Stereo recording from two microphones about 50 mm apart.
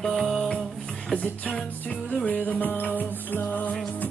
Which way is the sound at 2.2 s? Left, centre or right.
Left.